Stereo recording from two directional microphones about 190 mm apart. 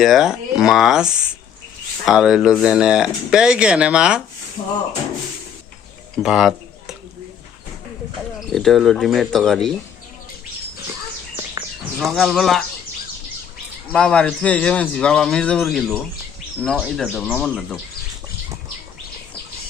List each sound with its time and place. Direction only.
0.0 s speech: centre (ahead or behind)
4.6 s speech: 30° left (ahead or behind)
6.2 s speech: centre (ahead or behind)
8.4 s speech: centre (ahead or behind)
11.9 s speech: centre (ahead or behind)
13.9 s speech: 5° left (ahead or behind)